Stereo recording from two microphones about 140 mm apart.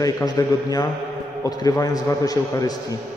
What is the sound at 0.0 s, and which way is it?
A man's voice, 25° left (ahead or behind).